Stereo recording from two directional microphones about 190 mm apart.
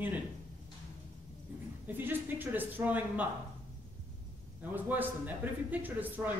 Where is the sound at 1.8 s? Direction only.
10° right (ahead or behind).